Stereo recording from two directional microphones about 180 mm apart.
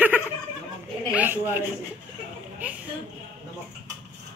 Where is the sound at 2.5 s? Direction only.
10° right (ahead or behind).